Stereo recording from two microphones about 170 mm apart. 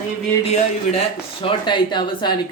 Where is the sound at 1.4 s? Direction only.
30° left (ahead or behind).